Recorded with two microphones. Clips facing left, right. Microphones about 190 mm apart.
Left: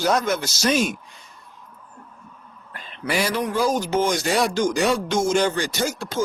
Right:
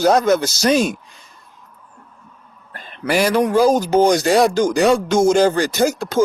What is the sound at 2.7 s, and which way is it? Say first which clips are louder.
Speech: right 6 dB; 45° right (ahead or behind).